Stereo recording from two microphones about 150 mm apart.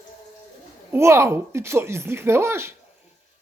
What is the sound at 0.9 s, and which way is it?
A woman's voice, 15° right (ahead or behind).